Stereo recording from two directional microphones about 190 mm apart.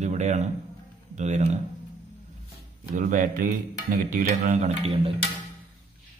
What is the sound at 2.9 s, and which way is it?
Speech, 45° right (ahead or behind).